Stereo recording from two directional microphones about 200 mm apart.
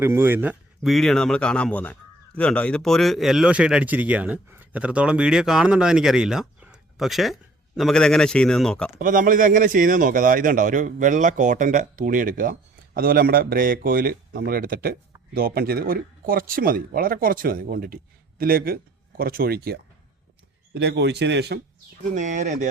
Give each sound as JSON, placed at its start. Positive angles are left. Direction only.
{"t": 0.0, "sound": "speech", "side_deg": -10}
{"t": 9.0, "sound": "a man's voice", "side_deg": -40}
{"t": 22.1, "sound": "speech", "side_deg": -35}